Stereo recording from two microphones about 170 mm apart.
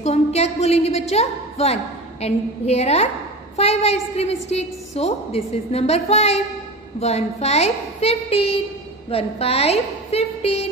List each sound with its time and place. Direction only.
0.0 s a woman's voice: 40° left (ahead or behind)